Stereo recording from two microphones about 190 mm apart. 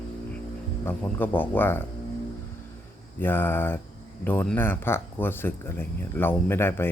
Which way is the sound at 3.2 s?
10° left (ahead or behind).